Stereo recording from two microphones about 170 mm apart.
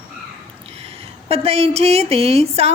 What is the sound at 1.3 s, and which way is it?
A woman's voice, 35° right (ahead or behind).